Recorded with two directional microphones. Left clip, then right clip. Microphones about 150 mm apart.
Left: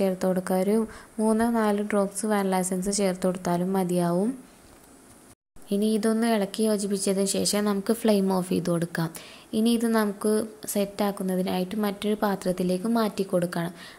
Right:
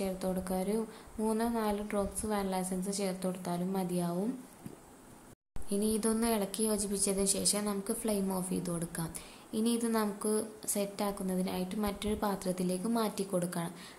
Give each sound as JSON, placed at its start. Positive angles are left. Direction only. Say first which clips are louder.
{"t": 0.0, "sound": "a woman's voice", "louder": "left 10 dB", "side_deg": 40}
{"t": 5.7, "sound": "a woman's voice", "louder": "left 8 dB", "side_deg": 30}